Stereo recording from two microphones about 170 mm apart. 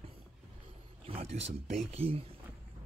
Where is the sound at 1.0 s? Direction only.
35° right (ahead or behind).